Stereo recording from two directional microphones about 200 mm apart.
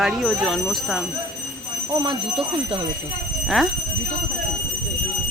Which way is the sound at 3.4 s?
Centre (ahead or behind).